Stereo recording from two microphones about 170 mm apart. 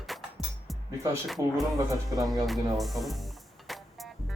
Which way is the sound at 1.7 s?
20° right (ahead or behind).